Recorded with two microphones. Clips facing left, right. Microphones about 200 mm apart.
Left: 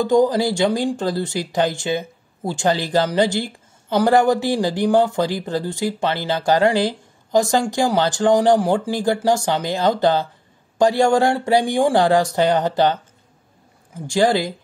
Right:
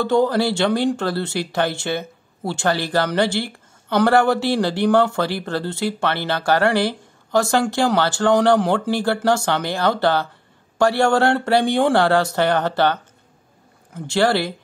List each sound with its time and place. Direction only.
0.0 s speech: 15° left (ahead or behind)
13.9 s speech: 15° left (ahead or behind)